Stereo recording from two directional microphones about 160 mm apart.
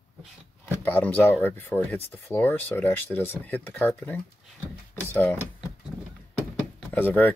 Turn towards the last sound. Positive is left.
turn(degrees=10)  # may be behind; listen again after turning